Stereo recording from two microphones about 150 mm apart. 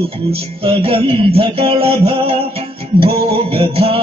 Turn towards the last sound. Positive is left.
turn(degrees=-40)  # may be behind; listen again after turning